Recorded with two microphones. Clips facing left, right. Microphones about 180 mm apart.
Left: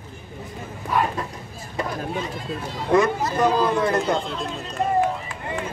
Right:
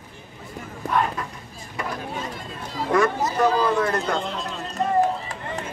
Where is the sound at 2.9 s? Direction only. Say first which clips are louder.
Left 2 dB; 20° left (ahead or behind).